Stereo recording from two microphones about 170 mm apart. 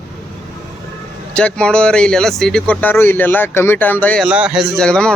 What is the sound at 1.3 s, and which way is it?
Speech, 5° left (ahead or behind).